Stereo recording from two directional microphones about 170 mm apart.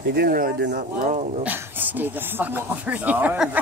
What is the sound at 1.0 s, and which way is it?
Speech, 45° right (ahead or behind).